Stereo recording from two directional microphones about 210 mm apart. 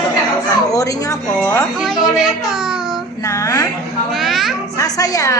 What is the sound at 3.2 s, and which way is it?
Music, 15° left (ahead or behind).